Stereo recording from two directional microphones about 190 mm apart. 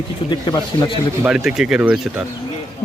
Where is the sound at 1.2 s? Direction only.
5° right (ahead or behind).